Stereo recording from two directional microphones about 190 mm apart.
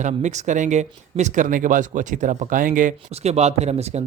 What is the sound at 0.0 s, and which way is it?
Speech, 40° right (ahead or behind).